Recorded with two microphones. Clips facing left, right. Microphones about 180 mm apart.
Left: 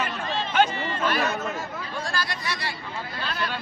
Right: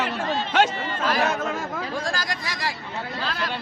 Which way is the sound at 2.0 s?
90° right.